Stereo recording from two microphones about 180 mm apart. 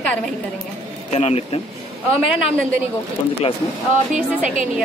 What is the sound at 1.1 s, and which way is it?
Speech, 40° left (ahead or behind).